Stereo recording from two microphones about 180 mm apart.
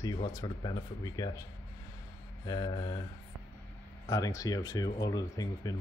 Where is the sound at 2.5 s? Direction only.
25° left (ahead or behind).